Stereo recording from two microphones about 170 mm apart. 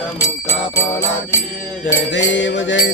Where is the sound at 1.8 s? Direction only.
90° left.